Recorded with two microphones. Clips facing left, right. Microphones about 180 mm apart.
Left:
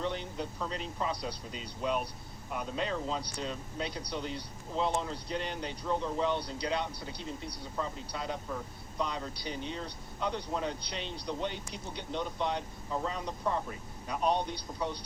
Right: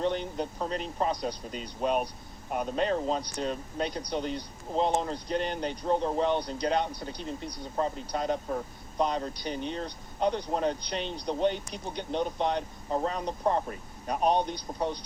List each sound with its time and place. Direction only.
0.0 s speech: 60° right (ahead or behind)
14.7 s speech: 50° right (ahead or behind)